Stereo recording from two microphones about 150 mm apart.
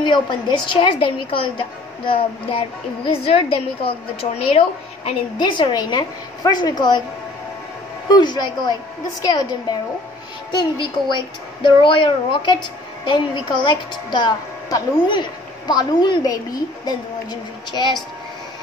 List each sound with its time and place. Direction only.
0.0 s a woman's voice: 30° left (ahead or behind)
8.1 s a woman's voice: 30° left (ahead or behind)